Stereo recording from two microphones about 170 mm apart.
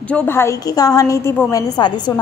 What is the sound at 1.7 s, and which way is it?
Speech, 25° left (ahead or behind).